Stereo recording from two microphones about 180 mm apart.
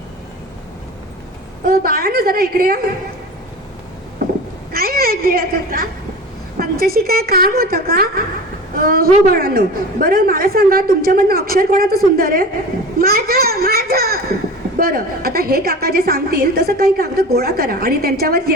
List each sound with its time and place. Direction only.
1.6 s a woman's voice: 55° right (ahead or behind)
4.7 s a woman's voice: 55° right (ahead or behind)